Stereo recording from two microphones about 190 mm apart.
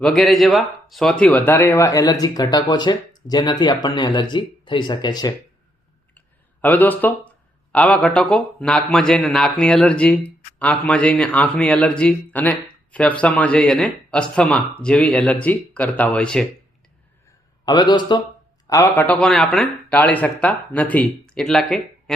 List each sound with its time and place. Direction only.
0.0 s speech: centre (ahead or behind); by 5.3 s 20° left (ahead or behind)
6.1 s speech: 10° left (ahead or behind)
17.7 s speech: 20° left (ahead or behind)
19.2 s speech: 5° left (ahead or behind)